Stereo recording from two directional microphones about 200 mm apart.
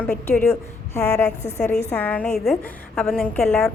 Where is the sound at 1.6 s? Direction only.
5° left (ahead or behind).